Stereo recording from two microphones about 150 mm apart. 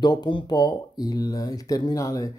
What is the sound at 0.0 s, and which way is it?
Speech, 30° left (ahead or behind).